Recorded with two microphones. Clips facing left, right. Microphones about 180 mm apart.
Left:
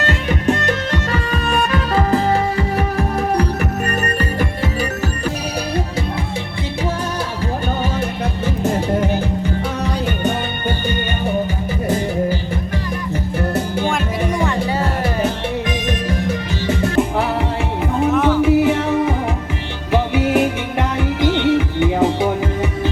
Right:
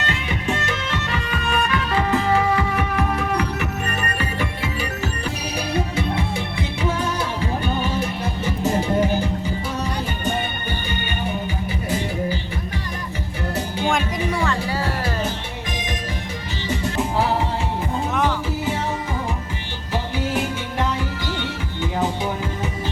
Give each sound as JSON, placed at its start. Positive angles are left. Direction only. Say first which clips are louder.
{"t": 0.0, "sound": "music", "louder": "left 7 dB", "side_deg": 45}
{"t": 14.3, "sound": "music", "louder": "left 5 dB", "side_deg": 20}
{"t": 16.6, "sound": "music", "louder": "left 6 dB", "side_deg": 60}
{"t": 18.4, "sound": "music", "louder": "left 10 dB", "side_deg": 65}